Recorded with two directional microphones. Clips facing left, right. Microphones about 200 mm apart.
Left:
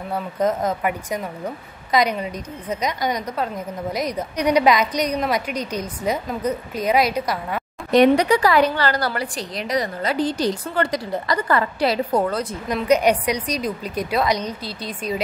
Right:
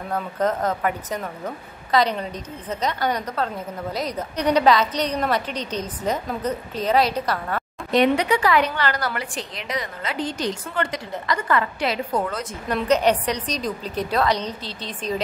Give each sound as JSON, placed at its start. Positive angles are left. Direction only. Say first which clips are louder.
{"t": 0.1, "sound": "a woman's voice", "louder": "left 2 dB", "side_deg": 10}
{"t": 7.9, "sound": "a woman's voice", "louder": "left 4 dB", "side_deg": 40}
{"t": 12.6, "sound": "a woman's voice", "louder": "left 1 dB", "side_deg": 10}